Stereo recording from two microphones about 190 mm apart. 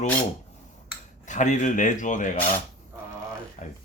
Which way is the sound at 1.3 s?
40° left (ahead or behind).